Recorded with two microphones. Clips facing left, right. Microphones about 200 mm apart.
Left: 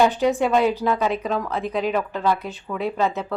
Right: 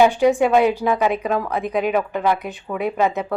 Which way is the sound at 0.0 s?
15° right (ahead or behind).